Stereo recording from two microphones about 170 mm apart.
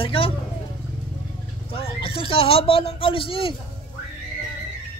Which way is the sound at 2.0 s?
35° left (ahead or behind).